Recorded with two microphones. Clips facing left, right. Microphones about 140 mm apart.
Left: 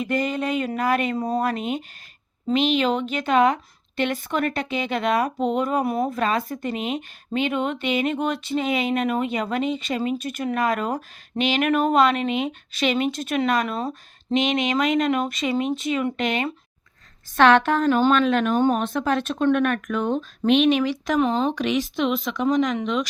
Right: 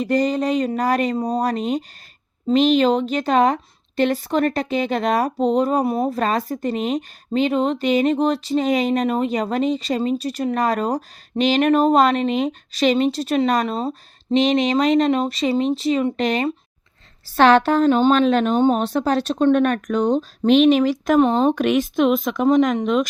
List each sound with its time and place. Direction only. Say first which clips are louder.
0.0 s speech: right 5 dB; 35° right (ahead or behind)
5.8 s speech: right 3 dB; 25° right (ahead or behind)
6.1 s speech: right 3 dB; 40° right (ahead or behind)